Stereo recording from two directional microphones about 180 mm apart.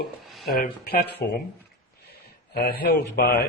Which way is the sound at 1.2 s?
60° left (ahead or behind).